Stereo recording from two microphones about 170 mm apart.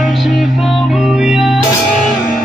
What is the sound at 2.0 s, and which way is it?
Music, 50° left (ahead or behind).